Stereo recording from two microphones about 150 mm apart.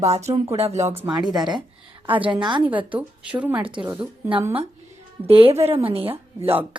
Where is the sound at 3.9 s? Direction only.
15° right (ahead or behind).